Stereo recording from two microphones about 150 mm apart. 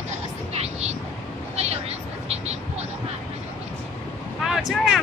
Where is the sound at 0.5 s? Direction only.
45° right (ahead or behind).